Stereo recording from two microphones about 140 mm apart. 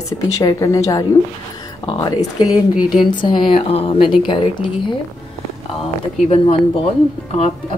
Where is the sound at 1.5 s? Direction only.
30° left (ahead or behind).